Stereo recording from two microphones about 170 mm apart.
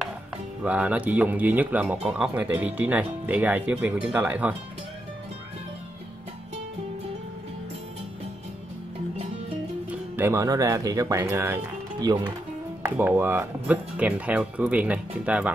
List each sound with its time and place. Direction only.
0.7 s speech: 10° right (ahead or behind)
9.8 s speech: 10° right (ahead or behind)
12.8 s speech: 10° right (ahead or behind)